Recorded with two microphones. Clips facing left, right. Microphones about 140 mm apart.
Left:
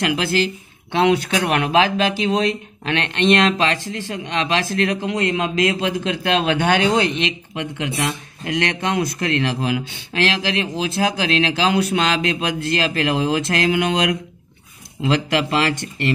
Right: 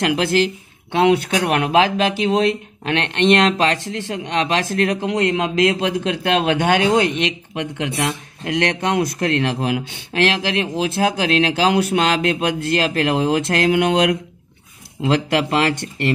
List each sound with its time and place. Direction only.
0.0 s speech: 55° right (ahead or behind)
1.4 s speech: 45° right (ahead or behind)